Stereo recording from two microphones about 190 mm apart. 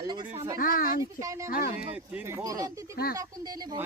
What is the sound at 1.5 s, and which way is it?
Speech, 45° left (ahead or behind).